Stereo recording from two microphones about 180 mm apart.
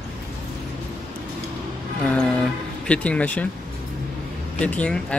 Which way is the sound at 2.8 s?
5° left (ahead or behind).